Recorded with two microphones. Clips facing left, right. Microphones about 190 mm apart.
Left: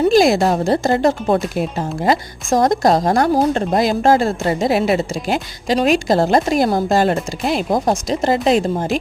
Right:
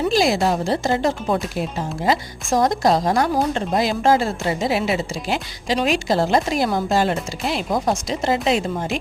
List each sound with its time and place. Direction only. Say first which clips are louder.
0.1 s a woman's voice: left 5 dB; 50° left (ahead or behind)